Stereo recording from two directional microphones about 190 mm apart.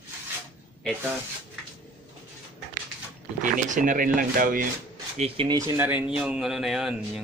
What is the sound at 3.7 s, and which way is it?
Speech, 45° right (ahead or behind).